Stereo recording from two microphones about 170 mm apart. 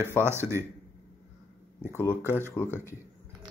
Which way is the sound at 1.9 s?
15° left (ahead or behind).